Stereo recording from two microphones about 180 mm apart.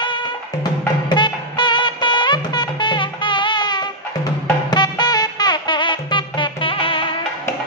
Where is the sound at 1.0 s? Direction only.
25° left (ahead or behind).